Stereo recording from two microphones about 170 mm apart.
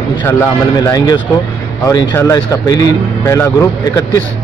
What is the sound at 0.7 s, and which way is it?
Speech, 20° left (ahead or behind).